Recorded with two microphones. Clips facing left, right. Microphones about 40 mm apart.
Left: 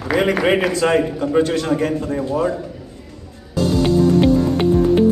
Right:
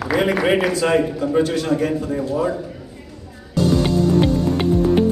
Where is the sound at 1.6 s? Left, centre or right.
Left.